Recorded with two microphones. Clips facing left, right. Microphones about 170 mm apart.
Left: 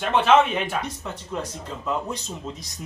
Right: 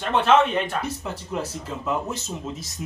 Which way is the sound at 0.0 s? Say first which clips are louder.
Left 1 dB; centre (ahead or behind).